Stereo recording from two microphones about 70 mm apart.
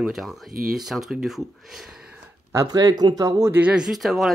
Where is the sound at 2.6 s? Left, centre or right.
Right.